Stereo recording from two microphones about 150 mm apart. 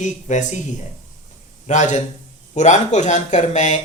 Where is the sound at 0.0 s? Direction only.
55° left (ahead or behind).